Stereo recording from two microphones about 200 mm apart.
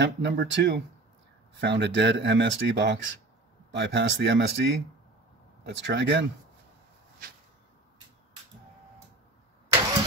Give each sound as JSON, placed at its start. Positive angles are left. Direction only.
{"t": 0.0, "sound": "speech", "side_deg": -65}